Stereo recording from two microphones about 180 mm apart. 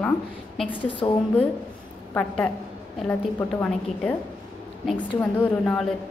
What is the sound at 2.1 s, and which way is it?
Speech, 5° left (ahead or behind).